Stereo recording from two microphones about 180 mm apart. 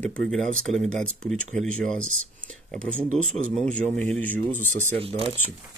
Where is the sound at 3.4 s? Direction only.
5° left (ahead or behind).